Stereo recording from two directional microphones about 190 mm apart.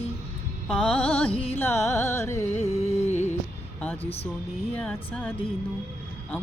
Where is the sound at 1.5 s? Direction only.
10° left (ahead or behind).